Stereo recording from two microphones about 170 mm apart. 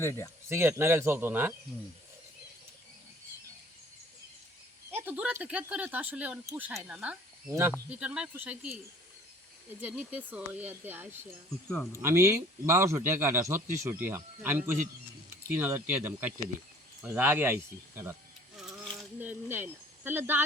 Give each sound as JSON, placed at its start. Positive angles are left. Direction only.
{"t": 0.0, "sound": "a man's voice", "side_deg": 15}
{"t": 0.4, "sound": "a man's voice", "side_deg": -15}
{"t": 4.9, "sound": "a man's voice", "side_deg": -10}
{"t": 9.8, "sound": "a man's voice", "side_deg": -5}
{"t": 11.7, "sound": "a man's voice", "side_deg": 10}
{"t": 12.0, "sound": "a man's voice", "side_deg": -15}
{"t": 19.2, "sound": "a man's voice", "side_deg": -10}